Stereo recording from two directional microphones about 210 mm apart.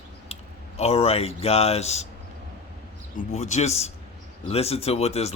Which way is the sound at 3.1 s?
30° left (ahead or behind).